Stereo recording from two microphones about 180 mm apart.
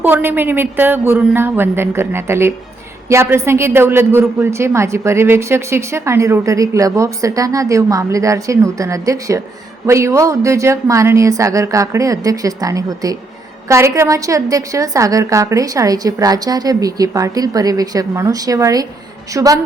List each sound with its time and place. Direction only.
0.0 s a woman's voice: 10° right (ahead or behind)